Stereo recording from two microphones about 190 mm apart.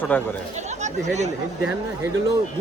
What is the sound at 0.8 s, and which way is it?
Speech, 35° right (ahead or behind).